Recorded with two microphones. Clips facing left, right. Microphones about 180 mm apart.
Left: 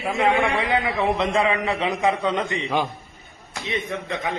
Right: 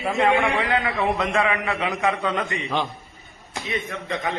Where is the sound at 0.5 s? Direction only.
15° left (ahead or behind).